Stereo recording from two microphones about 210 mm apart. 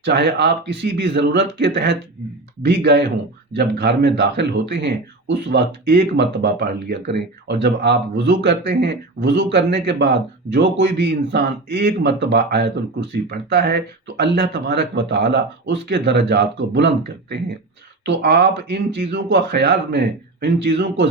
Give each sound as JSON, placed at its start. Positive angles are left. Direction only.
{"t": 0.0, "sound": "speech", "side_deg": -55}